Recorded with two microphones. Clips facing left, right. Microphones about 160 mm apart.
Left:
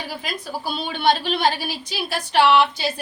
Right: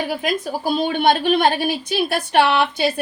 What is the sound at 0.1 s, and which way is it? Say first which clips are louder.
A woman's voice: right 7 dB; 50° right (ahead or behind).